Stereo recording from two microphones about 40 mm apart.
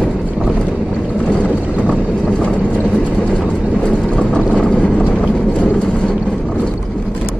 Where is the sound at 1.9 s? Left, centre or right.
Left.